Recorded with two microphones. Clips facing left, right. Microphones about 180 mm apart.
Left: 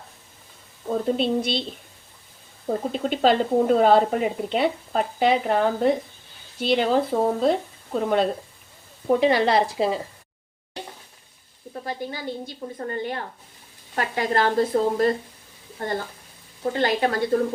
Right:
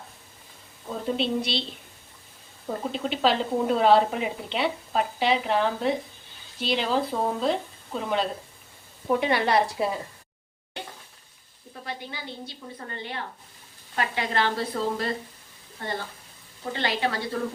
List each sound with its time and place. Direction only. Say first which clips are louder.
0.9 s speech: left 5 dB; 45° left (ahead or behind)
2.6 s speech: left 4 dB; 45° left (ahead or behind)
9.2 s a woman's voice: left 4 dB; 30° left (ahead or behind)
11.9 s speech: left 6 dB; 45° left (ahead or behind)